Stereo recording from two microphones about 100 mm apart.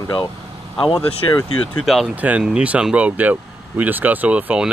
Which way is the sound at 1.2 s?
40° left (ahead or behind).